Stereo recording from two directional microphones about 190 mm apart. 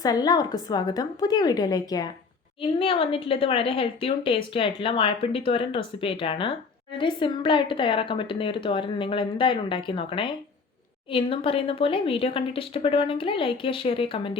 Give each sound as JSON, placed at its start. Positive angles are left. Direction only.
{"t": 0.0, "sound": "a woman's voice", "side_deg": 20}